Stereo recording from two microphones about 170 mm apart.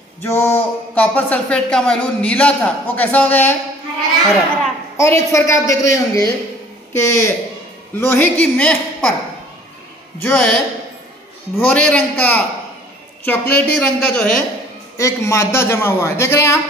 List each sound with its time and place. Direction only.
0.2 s speech: 15° left (ahead or behind)
4.9 s speech: 15° left (ahead or behind)
10.2 s speech: 10° left (ahead or behind)
11.7 s speech: 5° left (ahead or behind)
15.0 s speech: 15° left (ahead or behind)